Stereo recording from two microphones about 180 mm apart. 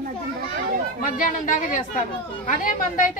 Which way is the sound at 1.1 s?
45° left (ahead or behind).